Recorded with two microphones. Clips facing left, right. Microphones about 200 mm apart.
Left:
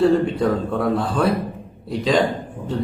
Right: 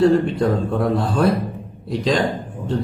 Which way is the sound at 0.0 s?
Centre (ahead or behind).